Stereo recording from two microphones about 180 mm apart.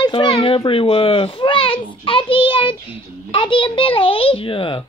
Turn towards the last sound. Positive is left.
turn(degrees=30)  # may be behind; listen again after turning